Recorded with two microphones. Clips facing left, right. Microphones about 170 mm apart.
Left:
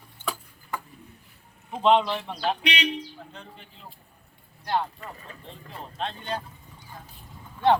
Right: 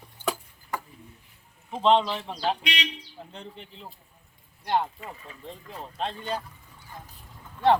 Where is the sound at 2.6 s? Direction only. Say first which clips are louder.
Left 5 dB; 55° left (ahead or behind).